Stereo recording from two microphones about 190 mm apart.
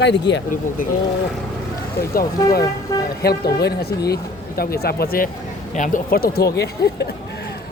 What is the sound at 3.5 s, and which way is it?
Speech, 55° left (ahead or behind).